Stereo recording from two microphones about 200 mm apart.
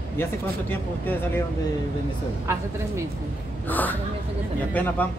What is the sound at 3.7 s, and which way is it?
Speech, 10° left (ahead or behind).